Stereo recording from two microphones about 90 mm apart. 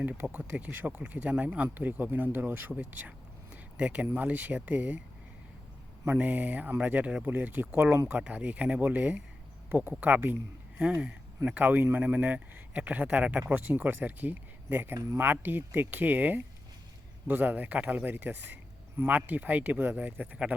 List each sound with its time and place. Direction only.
0.0 s speech: 15° right (ahead or behind)
6.1 s speech: 20° right (ahead or behind)